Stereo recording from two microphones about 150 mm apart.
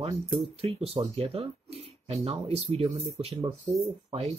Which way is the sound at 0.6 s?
40° right (ahead or behind).